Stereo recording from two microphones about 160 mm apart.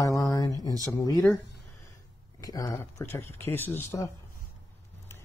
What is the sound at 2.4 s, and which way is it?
Speech, 25° left (ahead or behind).